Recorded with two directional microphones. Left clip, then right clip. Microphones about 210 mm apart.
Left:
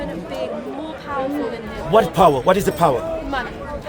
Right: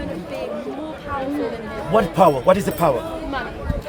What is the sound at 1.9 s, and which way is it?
Speech, 40° left (ahead or behind).